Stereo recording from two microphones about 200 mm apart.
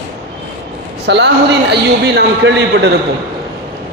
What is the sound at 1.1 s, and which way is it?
Speech, 60° right (ahead or behind).